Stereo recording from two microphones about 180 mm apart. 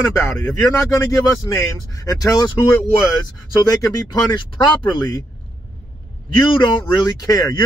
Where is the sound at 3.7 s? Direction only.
20° left (ahead or behind).